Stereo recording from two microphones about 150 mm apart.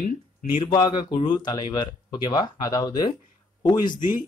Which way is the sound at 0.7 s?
30° left (ahead or behind).